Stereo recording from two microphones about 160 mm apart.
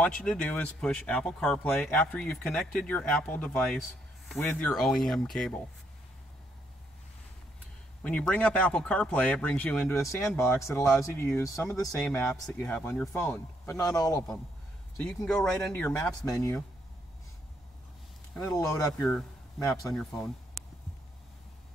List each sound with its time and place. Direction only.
0.0 s speech: 5° left (ahead or behind)
8.0 s speech: 5° left (ahead or behind)
12.1 s speech: 5° left (ahead or behind); by 14.2 s 25° left (ahead or behind)
15.0 s speech: 5° left (ahead or behind)
16.3 s speech: 20° left (ahead or behind)
18.3 s speech: 5° left (ahead or behind)